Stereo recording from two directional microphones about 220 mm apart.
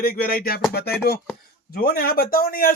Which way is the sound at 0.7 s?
45° left (ahead or behind).